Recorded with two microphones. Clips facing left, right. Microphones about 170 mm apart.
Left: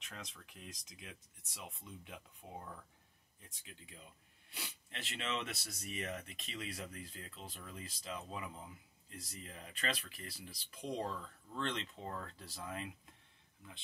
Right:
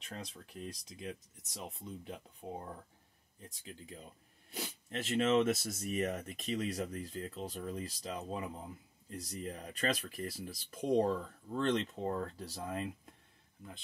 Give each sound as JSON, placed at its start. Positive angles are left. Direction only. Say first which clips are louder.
{"t": 0.0, "sound": "speech", "louder": "right 6 dB", "side_deg": -35}